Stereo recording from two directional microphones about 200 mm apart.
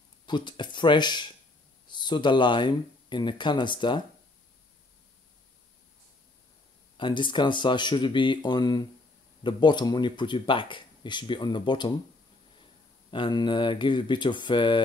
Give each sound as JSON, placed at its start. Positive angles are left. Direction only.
{"t": 0.3, "sound": "speech", "side_deg": 20}
{"t": 7.0, "sound": "speech", "side_deg": 25}
{"t": 13.1, "sound": "speech", "side_deg": 20}